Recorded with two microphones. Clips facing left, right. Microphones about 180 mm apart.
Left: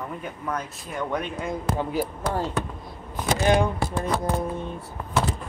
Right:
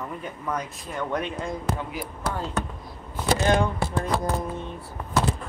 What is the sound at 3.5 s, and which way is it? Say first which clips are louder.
Speech: left 2 dB; 15° left (ahead or behind).